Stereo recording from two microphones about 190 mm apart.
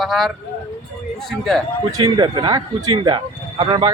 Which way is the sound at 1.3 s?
Centre (ahead or behind).